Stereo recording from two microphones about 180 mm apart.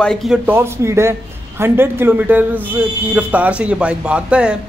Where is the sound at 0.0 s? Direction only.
5° left (ahead or behind).